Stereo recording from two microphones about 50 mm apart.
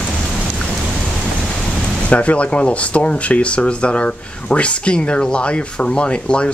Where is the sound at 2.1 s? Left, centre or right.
Left.